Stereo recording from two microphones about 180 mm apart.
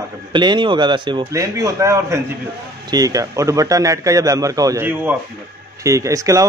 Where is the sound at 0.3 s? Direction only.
25° right (ahead or behind).